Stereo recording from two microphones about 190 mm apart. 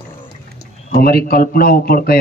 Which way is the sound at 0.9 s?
55° left (ahead or behind).